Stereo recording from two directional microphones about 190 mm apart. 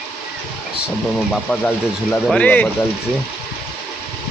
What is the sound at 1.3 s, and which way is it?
Speech, 5° left (ahead or behind).